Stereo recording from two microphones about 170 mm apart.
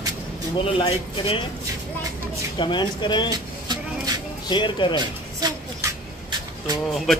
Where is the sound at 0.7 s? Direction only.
30° left (ahead or behind).